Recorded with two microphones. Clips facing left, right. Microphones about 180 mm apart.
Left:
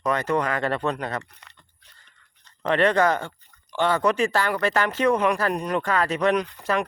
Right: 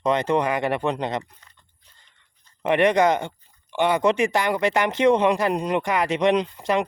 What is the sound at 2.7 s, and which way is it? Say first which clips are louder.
Speech: right 2 dB; 15° right (ahead or behind).